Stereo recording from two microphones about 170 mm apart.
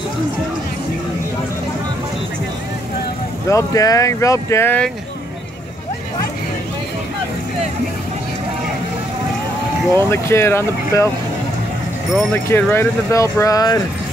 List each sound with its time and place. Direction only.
3.4 s speech: 20° left (ahead or behind)
9.9 s speech: 15° left (ahead or behind)
12.4 s speech: 10° left (ahead or behind)